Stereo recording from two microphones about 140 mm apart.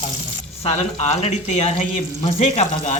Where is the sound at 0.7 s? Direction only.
50° left (ahead or behind).